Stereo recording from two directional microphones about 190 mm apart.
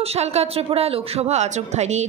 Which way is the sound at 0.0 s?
35° right (ahead or behind).